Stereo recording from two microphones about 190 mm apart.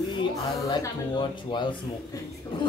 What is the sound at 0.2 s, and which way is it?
Speech, 25° left (ahead or behind).